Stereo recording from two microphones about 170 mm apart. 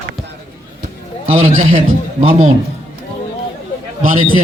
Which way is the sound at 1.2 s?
40° right (ahead or behind).